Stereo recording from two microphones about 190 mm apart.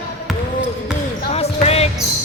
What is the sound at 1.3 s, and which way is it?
Basketball bounce, 30° left (ahead or behind).